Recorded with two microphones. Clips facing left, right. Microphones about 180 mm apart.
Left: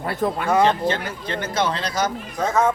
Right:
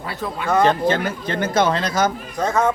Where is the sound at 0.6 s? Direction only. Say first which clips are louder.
Right 2 dB; 50° right (ahead or behind).